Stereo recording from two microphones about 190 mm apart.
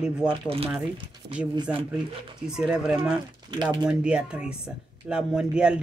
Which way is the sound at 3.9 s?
5° right (ahead or behind).